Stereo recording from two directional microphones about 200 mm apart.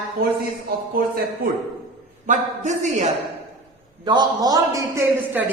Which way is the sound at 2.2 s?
40° right (ahead or behind).